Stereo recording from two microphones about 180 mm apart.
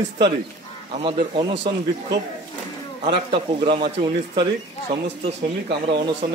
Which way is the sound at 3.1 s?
30° right (ahead or behind).